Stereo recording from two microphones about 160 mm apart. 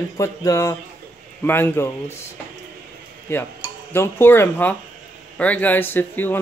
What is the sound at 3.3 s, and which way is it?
A man's voice, 15° left (ahead or behind).